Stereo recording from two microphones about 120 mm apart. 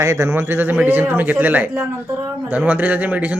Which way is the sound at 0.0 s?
25° right (ahead or behind).